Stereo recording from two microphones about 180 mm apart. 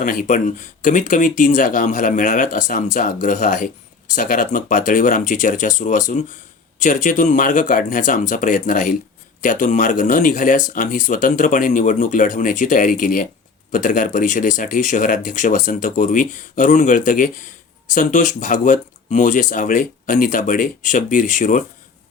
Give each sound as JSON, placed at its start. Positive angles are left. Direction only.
{"t": 0.0, "sound": "speech", "side_deg": 50}